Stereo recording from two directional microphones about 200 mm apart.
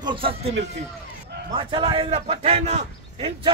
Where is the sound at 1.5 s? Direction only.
25° right (ahead or behind).